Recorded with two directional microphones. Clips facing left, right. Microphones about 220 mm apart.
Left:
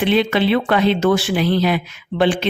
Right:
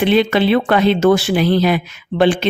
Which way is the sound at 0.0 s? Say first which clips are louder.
Right 3 dB; 45° right (ahead or behind).